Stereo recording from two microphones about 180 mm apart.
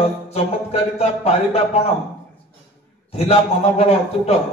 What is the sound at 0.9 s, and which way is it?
Speech, 35° left (ahead or behind).